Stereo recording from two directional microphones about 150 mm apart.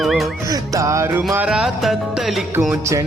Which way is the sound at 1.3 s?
5° right (ahead or behind).